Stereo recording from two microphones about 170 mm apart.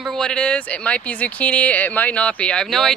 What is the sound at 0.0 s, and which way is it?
Speech, 5° left (ahead or behind).